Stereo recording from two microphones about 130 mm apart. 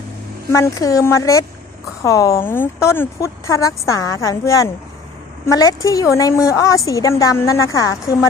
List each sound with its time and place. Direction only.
0.5 s a woman's voice: 25° left (ahead or behind)